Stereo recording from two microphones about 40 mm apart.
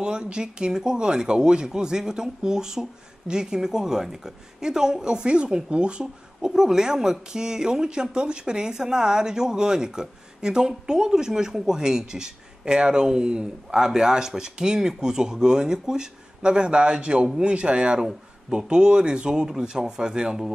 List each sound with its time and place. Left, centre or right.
0.0 s speech: right